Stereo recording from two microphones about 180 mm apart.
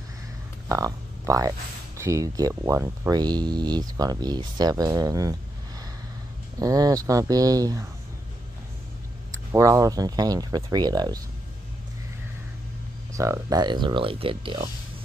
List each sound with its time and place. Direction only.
0.7 s speech: 20° right (ahead or behind)
6.6 s speech: 20° right (ahead or behind)
9.5 s speech: 15° right (ahead or behind)
13.1 s speech: 15° right (ahead or behind)